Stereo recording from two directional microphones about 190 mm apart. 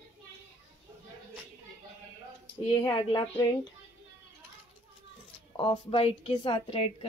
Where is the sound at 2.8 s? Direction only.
15° left (ahead or behind).